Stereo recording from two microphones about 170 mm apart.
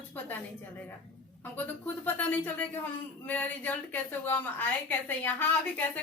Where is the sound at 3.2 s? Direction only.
10° left (ahead or behind).